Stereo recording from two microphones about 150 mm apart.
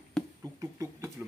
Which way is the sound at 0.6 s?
20° right (ahead or behind).